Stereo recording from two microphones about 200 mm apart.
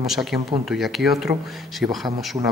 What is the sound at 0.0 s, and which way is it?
Speech, centre (ahead or behind).